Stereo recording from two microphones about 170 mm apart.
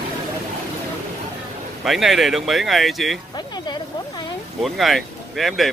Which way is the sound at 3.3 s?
25° left (ahead or behind).